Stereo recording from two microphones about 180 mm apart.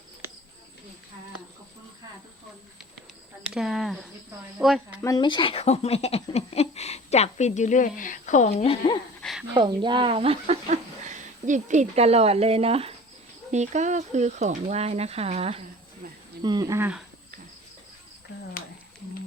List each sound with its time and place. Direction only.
3.5 s speech: centre (ahead or behind)
5.0 s speech: 25° left (ahead or behind)
9.5 s speech: 20° right (ahead or behind)
16.4 s speech: 25° right (ahead or behind)